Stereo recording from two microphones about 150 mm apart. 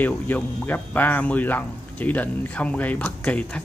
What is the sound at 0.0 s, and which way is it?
Speech, 10° left (ahead or behind).